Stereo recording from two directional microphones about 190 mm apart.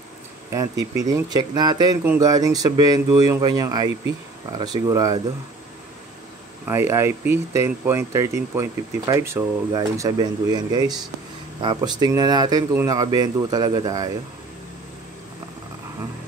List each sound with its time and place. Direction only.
0.9 s speech: 20° right (ahead or behind)
6.7 s speech: 15° right (ahead or behind)